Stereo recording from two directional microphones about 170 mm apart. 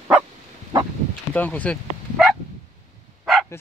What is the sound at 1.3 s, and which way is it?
Speech, 10° left (ahead or behind).